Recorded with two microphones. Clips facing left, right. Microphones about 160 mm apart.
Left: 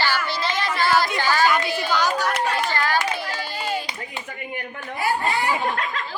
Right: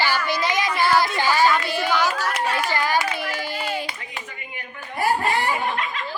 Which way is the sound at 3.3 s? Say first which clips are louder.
Right 2 dB; 25° right (ahead or behind).